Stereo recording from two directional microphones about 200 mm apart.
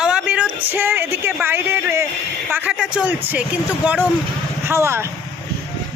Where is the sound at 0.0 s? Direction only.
5° right (ahead or behind).